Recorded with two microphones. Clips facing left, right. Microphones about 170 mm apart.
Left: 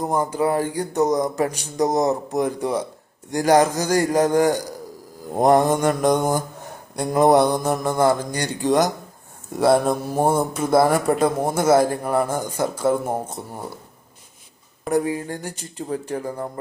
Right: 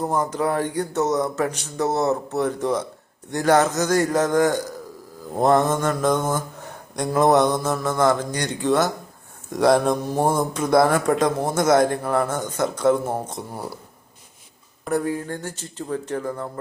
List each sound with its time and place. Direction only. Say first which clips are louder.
0.3 s a man's voice: left 2 dB; 5° left (ahead or behind)
9.5 s a man's voice: even; 5° left (ahead or behind)
14.9 s a man's voice: left 2 dB; 15° left (ahead or behind)